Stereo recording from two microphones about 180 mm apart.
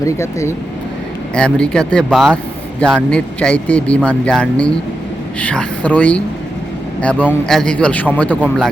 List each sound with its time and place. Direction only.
0.0 s a man's voice: 15° left (ahead or behind)